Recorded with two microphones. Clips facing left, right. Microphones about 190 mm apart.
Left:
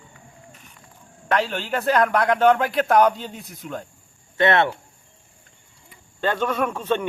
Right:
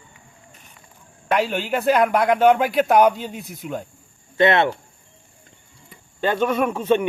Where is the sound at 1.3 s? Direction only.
10° right (ahead or behind).